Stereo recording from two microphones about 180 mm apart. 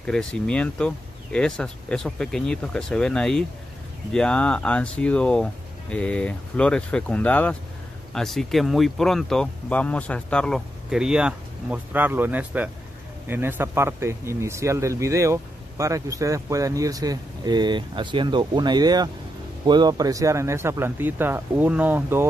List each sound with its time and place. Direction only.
0.0 s speech: 5° left (ahead or behind)